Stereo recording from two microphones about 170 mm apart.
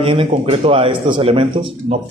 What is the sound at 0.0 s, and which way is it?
Speech, 30° right (ahead or behind).